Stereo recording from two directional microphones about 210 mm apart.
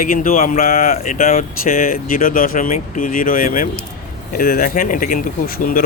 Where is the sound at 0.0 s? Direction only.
40° left (ahead or behind).